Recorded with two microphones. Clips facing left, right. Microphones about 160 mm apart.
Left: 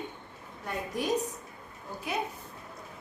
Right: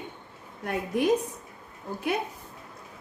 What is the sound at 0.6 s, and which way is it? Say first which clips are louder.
Speech: right 6 dB; 65° right (ahead or behind).